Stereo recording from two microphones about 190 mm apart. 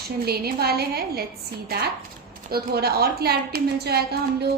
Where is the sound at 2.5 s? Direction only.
55° right (ahead or behind).